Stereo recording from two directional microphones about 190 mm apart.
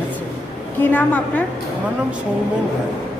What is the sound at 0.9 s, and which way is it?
Speech, 10° left (ahead or behind).